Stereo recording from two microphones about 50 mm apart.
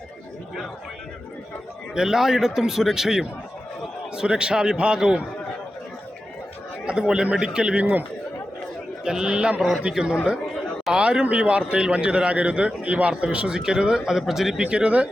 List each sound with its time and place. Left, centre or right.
2.0 s a man's voice: centre
6.8 s a man's voice: centre
9.0 s a man's voice: centre
9.6 s a man's voice: centre
10.9 s a man's voice: right; by 14.6 s centre
14.6 s a man's voice: right